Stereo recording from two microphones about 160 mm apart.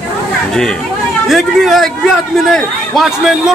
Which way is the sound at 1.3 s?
Centre (ahead or behind).